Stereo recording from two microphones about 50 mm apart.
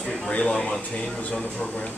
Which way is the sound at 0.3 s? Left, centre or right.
Left.